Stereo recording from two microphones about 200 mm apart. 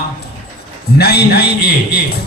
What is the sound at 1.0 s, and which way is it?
A man's voice, 55° left (ahead or behind).